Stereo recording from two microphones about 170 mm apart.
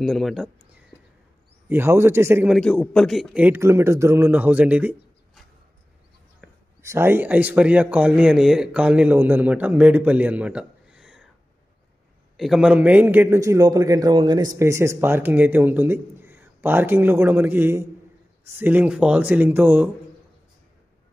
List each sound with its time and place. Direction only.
0.0 s speech: centre (ahead or behind)
1.7 s speech: 15° right (ahead or behind)
2.5 s speech: 5° left (ahead or behind)
6.4 s a sound: 5° left (ahead or behind)
6.8 s speech: 15° right (ahead or behind)
12.4 s speech: centre (ahead or behind)